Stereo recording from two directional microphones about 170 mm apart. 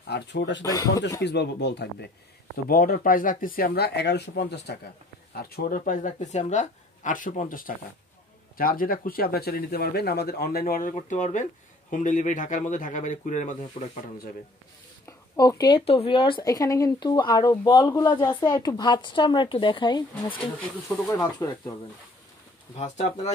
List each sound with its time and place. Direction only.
0.1 s speech: 85° left
0.7 s a woman's voice: 20° left (ahead or behind)
1.2 s speech: 90° left
2.5 s speech: 60° left (ahead or behind); by 4.7 s 75° left (ahead or behind)
5.3 s speech: 65° left (ahead or behind)
11.0 s speech: 45° left (ahead or behind)
15.0 s a woman's voice: 20° left (ahead or behind)
20.9 s a woman's voice: 15° left (ahead or behind)
22.8 s speech: 40° left (ahead or behind)